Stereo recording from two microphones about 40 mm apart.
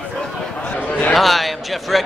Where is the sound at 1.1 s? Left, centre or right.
Centre.